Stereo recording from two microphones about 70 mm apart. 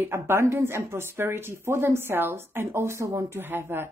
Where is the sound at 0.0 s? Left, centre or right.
Right.